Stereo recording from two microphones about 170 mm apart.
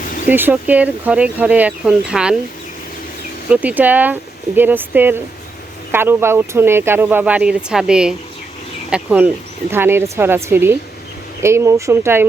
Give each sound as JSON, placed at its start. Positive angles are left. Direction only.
{"t": 0.3, "sound": "speech", "side_deg": -10}
{"t": 3.5, "sound": "speech", "side_deg": -10}